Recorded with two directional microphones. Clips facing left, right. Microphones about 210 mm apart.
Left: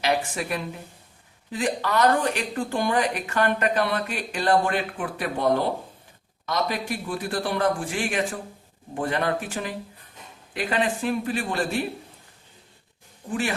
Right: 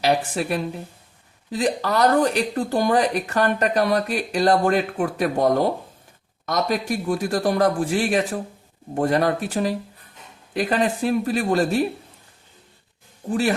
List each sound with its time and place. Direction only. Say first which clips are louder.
0.0 s speech: right 4 dB; 35° right (ahead or behind)